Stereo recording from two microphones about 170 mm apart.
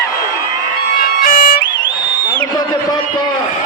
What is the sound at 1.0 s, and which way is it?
Music, 55° left (ahead or behind).